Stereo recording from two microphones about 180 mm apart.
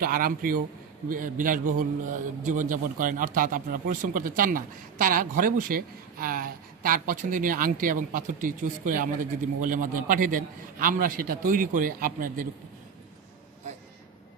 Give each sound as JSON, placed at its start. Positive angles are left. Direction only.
{"t": 0.0, "sound": "a man's voice", "side_deg": -55}